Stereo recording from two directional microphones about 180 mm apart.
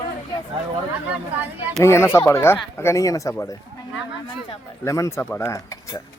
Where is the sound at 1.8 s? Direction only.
15° left (ahead or behind).